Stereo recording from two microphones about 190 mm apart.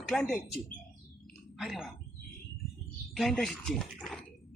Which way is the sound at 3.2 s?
Centre (ahead or behind).